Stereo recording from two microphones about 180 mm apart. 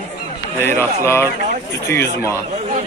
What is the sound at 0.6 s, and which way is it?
Speech, 10° left (ahead or behind).